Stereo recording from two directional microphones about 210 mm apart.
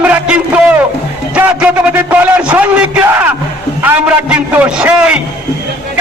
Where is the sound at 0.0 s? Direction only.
5° right (ahead or behind).